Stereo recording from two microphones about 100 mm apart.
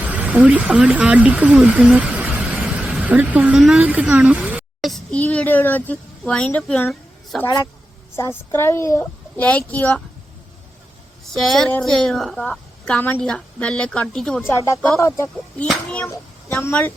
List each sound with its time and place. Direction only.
0.0 s speech: 15° right (ahead or behind)
4.8 s a sound: centre (ahead or behind)
5.1 s speech: 15° left (ahead or behind)
7.3 s a woman's voice: centre (ahead or behind)
8.1 s a woman's voice: 25° left (ahead or behind)
9.4 s speech: 15° left (ahead or behind)
11.3 s a woman's voice: 5° left (ahead or behind)
14.4 s a woman's voice: 25° left (ahead or behind)
15.6 s speech: 10° left (ahead or behind)
16.0 s a child's voice: 25° left (ahead or behind)